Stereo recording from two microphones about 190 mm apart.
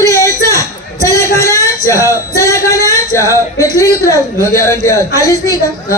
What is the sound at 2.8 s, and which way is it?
Singing, 15° right (ahead or behind).